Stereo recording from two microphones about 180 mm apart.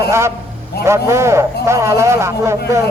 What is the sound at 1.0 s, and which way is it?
Speech, 15° right (ahead or behind).